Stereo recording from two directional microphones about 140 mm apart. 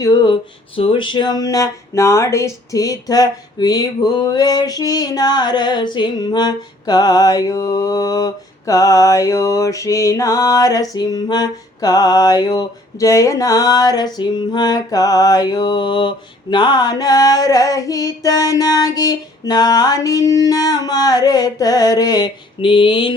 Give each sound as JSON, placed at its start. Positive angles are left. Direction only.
{"t": 0.0, "sound": "speech", "side_deg": 25}
{"t": 0.8, "sound": "speech", "side_deg": 40}